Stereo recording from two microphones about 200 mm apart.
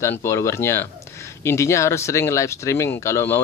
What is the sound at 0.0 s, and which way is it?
Speech, 15° left (ahead or behind).